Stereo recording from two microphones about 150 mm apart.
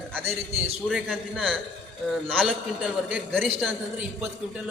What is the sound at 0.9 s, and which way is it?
A man's voice, centre (ahead or behind).